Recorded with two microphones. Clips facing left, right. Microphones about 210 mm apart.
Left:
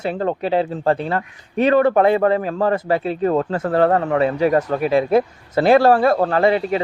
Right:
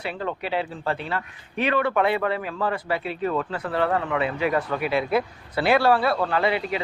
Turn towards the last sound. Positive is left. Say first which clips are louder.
# left 7 dB
turn(degrees=40)  # may be behind; listen again after turning